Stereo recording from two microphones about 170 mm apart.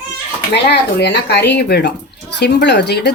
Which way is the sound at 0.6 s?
75° left (ahead or behind).